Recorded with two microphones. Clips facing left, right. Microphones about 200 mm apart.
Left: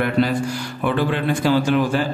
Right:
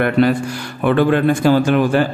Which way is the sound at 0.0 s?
60° right (ahead or behind).